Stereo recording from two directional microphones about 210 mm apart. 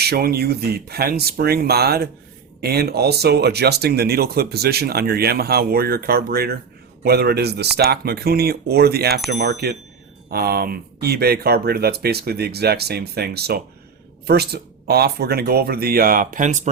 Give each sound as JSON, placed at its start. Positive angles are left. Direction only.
{"t": 0.0, "sound": "speech", "side_deg": -50}